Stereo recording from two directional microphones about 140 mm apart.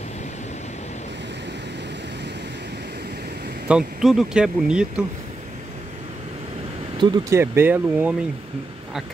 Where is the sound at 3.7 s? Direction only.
5° right (ahead or behind).